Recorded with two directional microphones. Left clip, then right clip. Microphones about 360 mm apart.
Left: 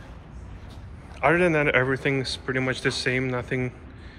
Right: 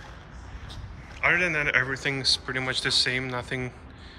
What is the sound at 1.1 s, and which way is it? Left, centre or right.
Speech, centre.